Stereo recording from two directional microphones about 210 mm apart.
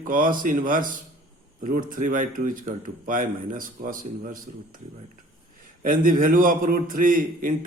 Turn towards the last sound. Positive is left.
turn(degrees=-40)  # may be behind; listen again after turning